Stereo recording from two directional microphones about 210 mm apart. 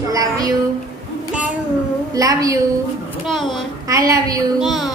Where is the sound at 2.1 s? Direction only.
15° right (ahead or behind).